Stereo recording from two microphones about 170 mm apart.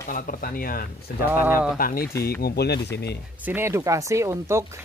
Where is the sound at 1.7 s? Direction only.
60° left (ahead or behind).